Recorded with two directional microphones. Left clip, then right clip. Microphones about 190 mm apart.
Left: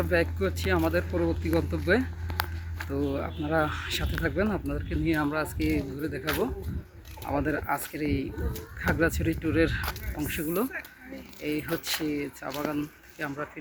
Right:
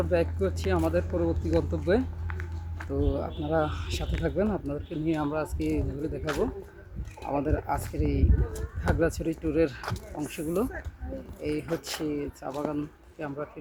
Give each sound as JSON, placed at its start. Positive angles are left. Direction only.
{"t": 0.0, "sound": "speech", "side_deg": 0}
{"t": 2.9, "sound": "speech", "side_deg": 15}
{"t": 3.2, "sound": "speech", "side_deg": 5}